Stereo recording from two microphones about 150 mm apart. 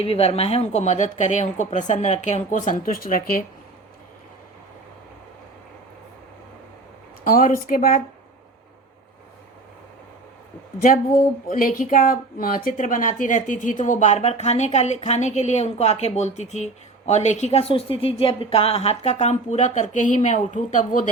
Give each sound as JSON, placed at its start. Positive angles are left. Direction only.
{"t": 0.0, "sound": "a woman's voice", "side_deg": 40}
{"t": 7.3, "sound": "speech", "side_deg": 70}
{"t": 11.1, "sound": "a woman's voice", "side_deg": 65}